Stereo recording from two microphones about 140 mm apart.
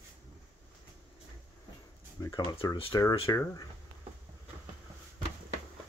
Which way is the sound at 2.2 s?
25° left (ahead or behind).